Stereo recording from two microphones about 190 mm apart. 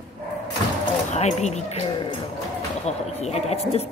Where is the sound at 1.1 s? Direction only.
35° left (ahead or behind).